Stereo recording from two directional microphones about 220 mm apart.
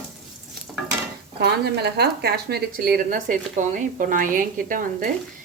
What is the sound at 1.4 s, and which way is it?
A woman's voice, 50° right (ahead or behind).